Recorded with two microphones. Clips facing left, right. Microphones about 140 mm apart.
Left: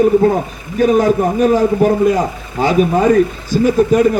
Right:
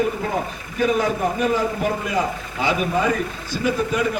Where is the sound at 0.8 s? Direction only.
45° left (ahead or behind).